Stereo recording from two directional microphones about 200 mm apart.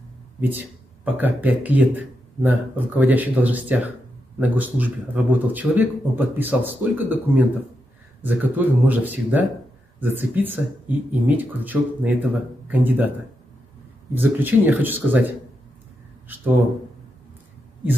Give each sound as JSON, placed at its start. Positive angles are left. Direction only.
{"t": 0.4, "sound": "speech", "side_deg": -10}
{"t": 14.1, "sound": "speech", "side_deg": -10}